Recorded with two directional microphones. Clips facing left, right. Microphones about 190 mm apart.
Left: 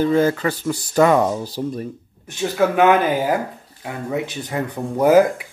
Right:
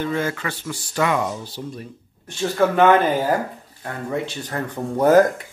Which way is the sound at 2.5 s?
10° left (ahead or behind).